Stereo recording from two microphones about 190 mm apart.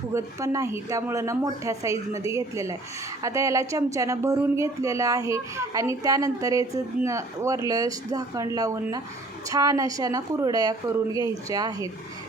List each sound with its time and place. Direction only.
0.1 s a woman's voice: 15° right (ahead or behind)